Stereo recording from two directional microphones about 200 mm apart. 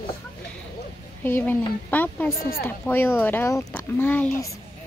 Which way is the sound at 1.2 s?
10° left (ahead or behind).